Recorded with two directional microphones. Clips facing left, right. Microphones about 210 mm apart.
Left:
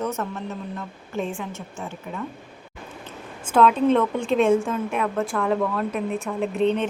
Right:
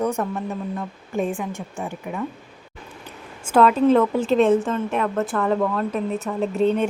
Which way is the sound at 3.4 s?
5° right (ahead or behind).